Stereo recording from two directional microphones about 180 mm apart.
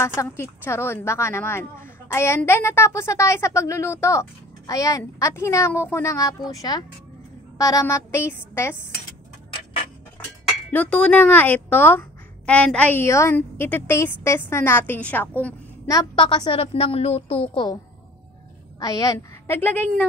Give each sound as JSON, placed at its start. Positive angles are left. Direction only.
{"t": 0.0, "sound": "a woman's voice", "side_deg": 15}
{"t": 10.7, "sound": "a woman's voice", "side_deg": 10}
{"t": 18.8, "sound": "a woman's voice", "side_deg": 20}